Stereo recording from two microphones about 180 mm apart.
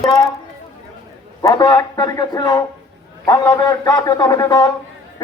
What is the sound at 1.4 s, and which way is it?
A man's voice, 20° left (ahead or behind).